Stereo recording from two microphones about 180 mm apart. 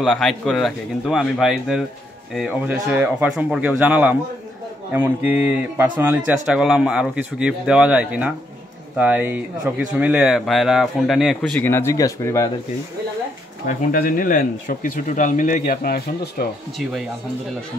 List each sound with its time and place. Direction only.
0.0 s speech: centre (ahead or behind)
11.6 s speech: 15° left (ahead or behind)
13.7 s speech: 50° left (ahead or behind)